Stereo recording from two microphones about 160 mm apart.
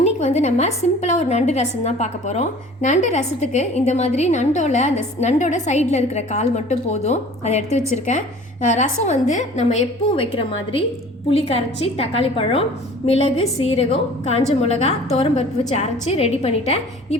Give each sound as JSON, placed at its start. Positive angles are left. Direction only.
{"t": 0.0, "sound": "a woman's voice", "side_deg": 45}
{"t": 10.2, "sound": "a woman's voice", "side_deg": 35}